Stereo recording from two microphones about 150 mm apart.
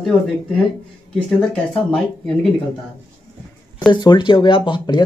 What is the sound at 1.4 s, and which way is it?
Speech, 5° left (ahead or behind).